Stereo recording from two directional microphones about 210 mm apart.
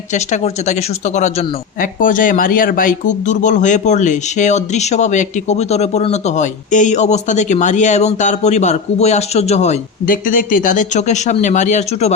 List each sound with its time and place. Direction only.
0.1 s speech: 35° left (ahead or behind)